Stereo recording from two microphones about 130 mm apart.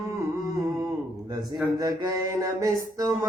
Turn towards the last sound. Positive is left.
turn(degrees=-25)  # may be behind; listen again after turning